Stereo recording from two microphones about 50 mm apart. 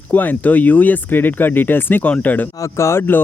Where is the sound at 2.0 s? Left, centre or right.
Left.